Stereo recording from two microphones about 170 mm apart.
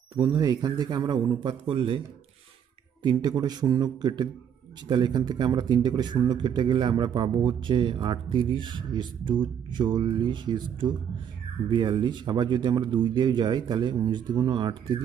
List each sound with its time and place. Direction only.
0.1 s a man's voice: 20° right (ahead or behind)
3.0 s a man's voice: 25° right (ahead or behind)